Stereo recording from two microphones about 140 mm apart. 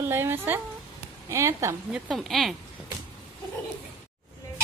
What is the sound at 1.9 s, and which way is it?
Speech, centre (ahead or behind).